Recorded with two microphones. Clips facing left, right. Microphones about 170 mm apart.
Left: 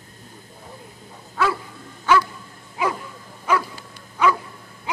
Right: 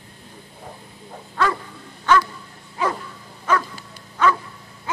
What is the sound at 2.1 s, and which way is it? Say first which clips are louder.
Dog: even; 10° left (ahead or behind).